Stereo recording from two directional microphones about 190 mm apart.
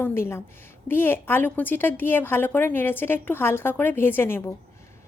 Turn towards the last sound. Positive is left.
turn(degrees=10)  # may be behind; listen again after turning